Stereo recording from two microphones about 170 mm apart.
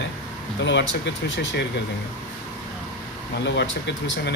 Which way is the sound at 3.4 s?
90° left.